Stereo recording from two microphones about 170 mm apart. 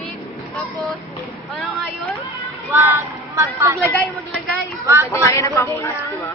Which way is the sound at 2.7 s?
15° right (ahead or behind).